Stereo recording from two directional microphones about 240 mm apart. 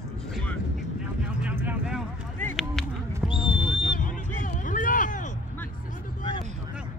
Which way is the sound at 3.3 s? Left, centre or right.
Left.